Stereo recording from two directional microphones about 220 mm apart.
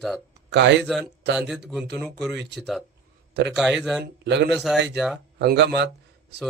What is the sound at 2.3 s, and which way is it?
Speech, 50° right (ahead or behind).